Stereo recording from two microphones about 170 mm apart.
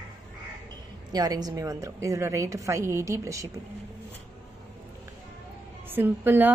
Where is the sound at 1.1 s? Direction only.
20° right (ahead or behind).